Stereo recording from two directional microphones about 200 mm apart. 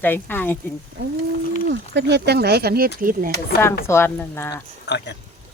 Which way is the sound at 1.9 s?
55° right (ahead or behind).